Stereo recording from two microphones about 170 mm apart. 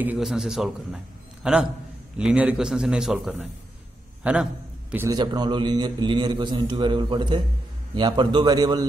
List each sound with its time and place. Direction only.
0.0 s a man's voice: 5° right (ahead or behind)
4.9 s a man's voice: 20° right (ahead or behind)